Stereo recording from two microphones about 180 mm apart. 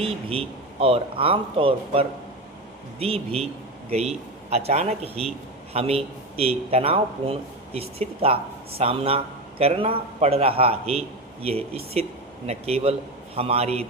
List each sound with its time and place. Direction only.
0.0 s a man's voice: 30° right (ahead or behind)